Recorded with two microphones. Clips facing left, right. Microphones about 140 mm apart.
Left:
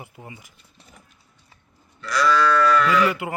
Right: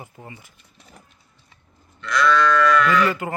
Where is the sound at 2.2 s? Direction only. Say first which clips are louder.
Right 1 dB; 5° left (ahead or behind).